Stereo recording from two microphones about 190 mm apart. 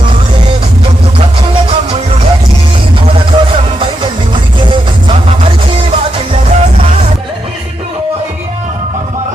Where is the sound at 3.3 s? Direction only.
25° right (ahead or behind).